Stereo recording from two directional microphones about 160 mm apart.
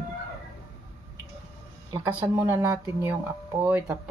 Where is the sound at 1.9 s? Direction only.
15° right (ahead or behind).